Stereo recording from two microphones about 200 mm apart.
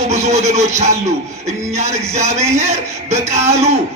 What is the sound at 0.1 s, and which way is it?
Speech, 35° right (ahead or behind).